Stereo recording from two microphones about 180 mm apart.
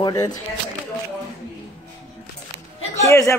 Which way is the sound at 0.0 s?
20° left (ahead or behind).